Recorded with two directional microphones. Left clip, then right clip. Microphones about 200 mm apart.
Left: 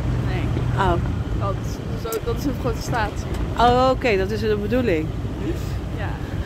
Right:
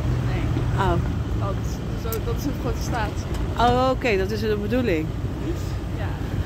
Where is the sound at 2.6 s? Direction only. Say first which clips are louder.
Left 4 dB; 55° left (ahead or behind).